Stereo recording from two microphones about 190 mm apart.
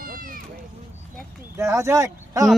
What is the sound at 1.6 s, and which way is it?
Speech, 15° right (ahead or behind).